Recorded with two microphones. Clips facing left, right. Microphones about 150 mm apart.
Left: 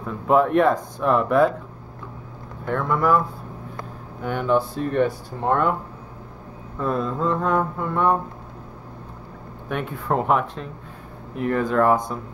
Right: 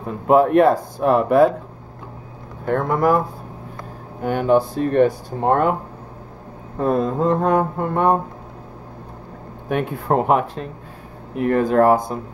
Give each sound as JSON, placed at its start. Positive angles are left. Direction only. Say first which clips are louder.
{"t": 0.4, "sound": "speech", "louder": "right 4 dB", "side_deg": -40}
{"t": 2.6, "sound": "speech", "louder": "right 4 dB", "side_deg": -40}
{"t": 5.4, "sound": "speech", "louder": "right 4 dB", "side_deg": -40}
{"t": 6.8, "sound": "speech", "louder": "right 5 dB", "side_deg": -45}
{"t": 9.7, "sound": "speech", "louder": "right 5 dB", "side_deg": -40}
{"t": 11.3, "sound": "speech", "louder": "right 5 dB", "side_deg": -50}
{"t": 11.6, "sound": "speech", "louder": "right 4 dB", "side_deg": -40}